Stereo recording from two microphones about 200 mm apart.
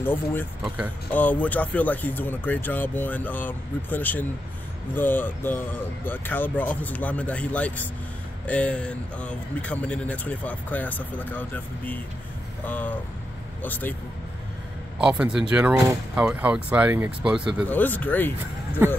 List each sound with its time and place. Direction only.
0.0 s a man's voice: 10° left (ahead or behind)
15.0 s speech: 5° right (ahead or behind)
17.6 s speech: 10° left (ahead or behind)